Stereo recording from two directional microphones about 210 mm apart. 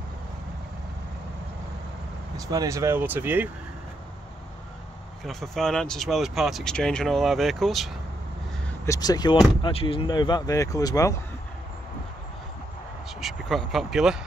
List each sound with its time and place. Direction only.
2.3 s speech: 15° right (ahead or behind)
5.2 s speech: centre (ahead or behind)
8.8 s speech: 15° left (ahead or behind)
13.2 s speech: centre (ahead or behind)